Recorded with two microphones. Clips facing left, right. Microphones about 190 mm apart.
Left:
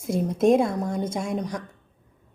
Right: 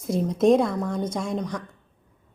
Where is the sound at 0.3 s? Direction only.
50° left (ahead or behind).